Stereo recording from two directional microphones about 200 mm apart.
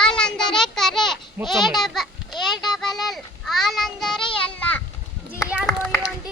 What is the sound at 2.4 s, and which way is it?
Child singing, centre (ahead or behind).